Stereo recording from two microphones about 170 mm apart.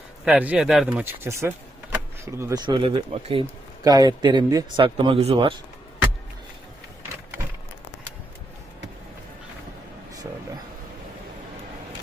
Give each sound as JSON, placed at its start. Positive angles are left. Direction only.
{"t": 0.3, "sound": "speech", "side_deg": -10}
{"t": 2.6, "sound": "speech", "side_deg": -25}
{"t": 3.8, "sound": "speech", "side_deg": -25}